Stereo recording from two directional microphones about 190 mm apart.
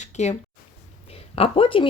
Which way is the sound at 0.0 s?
35° left (ahead or behind).